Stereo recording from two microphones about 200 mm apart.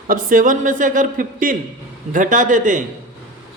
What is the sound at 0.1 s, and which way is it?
Speech, 40° right (ahead or behind).